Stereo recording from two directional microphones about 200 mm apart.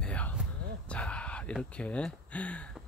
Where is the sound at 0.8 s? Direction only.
5° left (ahead or behind).